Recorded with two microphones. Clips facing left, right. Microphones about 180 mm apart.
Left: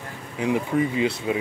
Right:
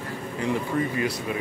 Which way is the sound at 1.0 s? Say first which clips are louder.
Left 4 dB; 25° left (ahead or behind).